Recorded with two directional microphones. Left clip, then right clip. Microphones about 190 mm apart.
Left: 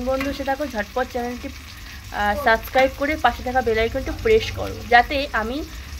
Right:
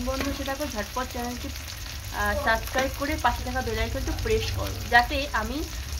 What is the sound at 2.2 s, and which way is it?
Speech, 35° left (ahead or behind).